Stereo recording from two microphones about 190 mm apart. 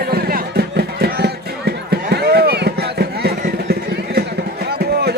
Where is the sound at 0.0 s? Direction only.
55° right (ahead or behind).